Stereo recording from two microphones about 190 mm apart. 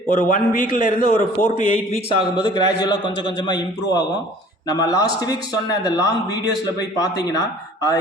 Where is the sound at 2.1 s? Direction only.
25° left (ahead or behind).